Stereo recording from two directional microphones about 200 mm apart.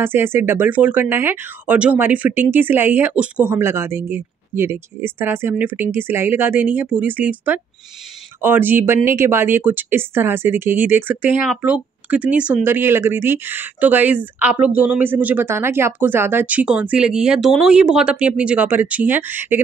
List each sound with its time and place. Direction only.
0.0 s speech: 10° right (ahead or behind)